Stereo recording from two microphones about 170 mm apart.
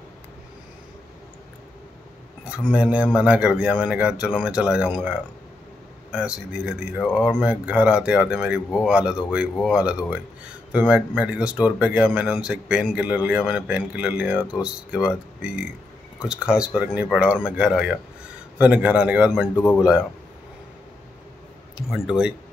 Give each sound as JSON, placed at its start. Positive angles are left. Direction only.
{"t": 2.5, "sound": "speech", "side_deg": -5}
{"t": 6.1, "sound": "speech", "side_deg": -5}
{"t": 19.5, "sound": "speech", "side_deg": 15}